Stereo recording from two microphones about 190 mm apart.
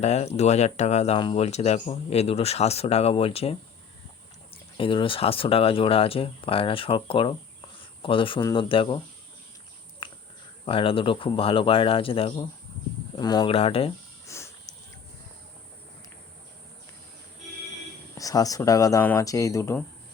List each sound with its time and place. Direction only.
0.0 s speech: 35° left (ahead or behind)
4.5 s speech: 25° left (ahead or behind)
10.0 s cricket: 25° left (ahead or behind)
10.7 s speech: 30° left (ahead or behind)
14.3 s a sound: 15° left (ahead or behind)
18.2 s speech: 20° left (ahead or behind)